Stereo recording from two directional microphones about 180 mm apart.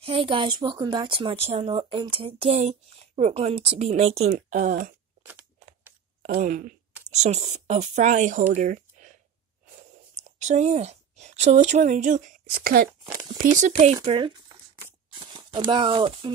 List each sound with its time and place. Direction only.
0.0 s a woman's voice: 30° right (ahead or behind); by 4.9 s 45° right (ahead or behind)
6.2 s speech: 45° right (ahead or behind)
10.4 s a woman's voice: 40° right (ahead or behind)
12.5 s speech: 55° right (ahead or behind)
13.4 s a woman's voice: 45° right (ahead or behind)
14.0 s speech: 30° right (ahead or behind)